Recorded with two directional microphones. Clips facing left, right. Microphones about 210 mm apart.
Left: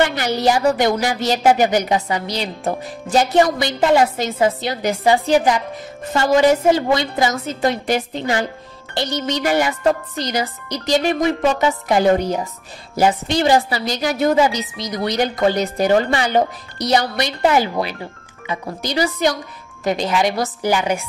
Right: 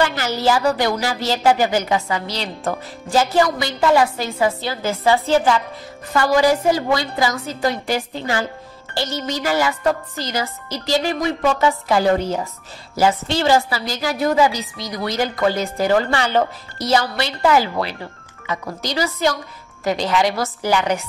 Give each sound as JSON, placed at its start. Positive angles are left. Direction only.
{"t": 0.0, "sound": "a sound", "side_deg": 20}
{"t": 0.4, "sound": "a woman's voice", "side_deg": 20}
{"t": 19.8, "sound": "a woman's voice", "side_deg": 20}